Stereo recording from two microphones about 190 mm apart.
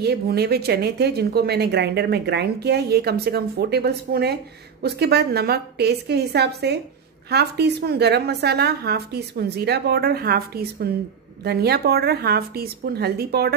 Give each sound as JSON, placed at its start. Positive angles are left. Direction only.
{"t": 0.0, "sound": "speech", "side_deg": -60}